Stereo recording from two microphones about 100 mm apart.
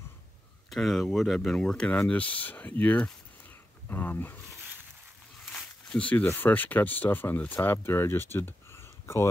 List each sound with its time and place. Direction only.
0.7 s speech: centre (ahead or behind); by 4.4 s 20° left (ahead or behind)
5.4 s speech: 5° left (ahead or behind); by 9.3 s 25° left (ahead or behind)